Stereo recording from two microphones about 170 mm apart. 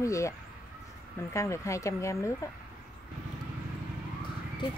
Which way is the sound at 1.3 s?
15° left (ahead or behind).